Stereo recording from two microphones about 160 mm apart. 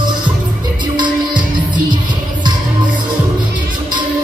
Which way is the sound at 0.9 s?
30° right (ahead or behind).